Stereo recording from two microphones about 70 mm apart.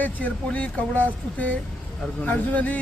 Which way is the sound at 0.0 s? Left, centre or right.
Centre.